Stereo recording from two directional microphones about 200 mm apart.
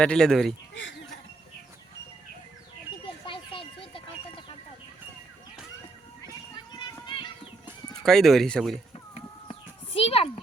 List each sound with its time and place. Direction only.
0.0 s speech: 5° left (ahead or behind)
0.7 s a sound: 65° left (ahead or behind)
3.0 s music: 25° left (ahead or behind)
6.2 s children playing: 20° left (ahead or behind)
8.0 s speech: centre (ahead or behind)
9.5 s children playing: 30° left (ahead or behind)